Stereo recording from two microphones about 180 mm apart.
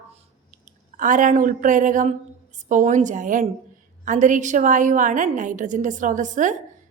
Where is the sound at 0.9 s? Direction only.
45° right (ahead or behind).